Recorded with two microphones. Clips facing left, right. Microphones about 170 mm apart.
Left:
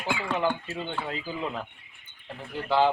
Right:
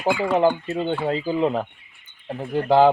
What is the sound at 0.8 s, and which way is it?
Speech, 35° right (ahead or behind).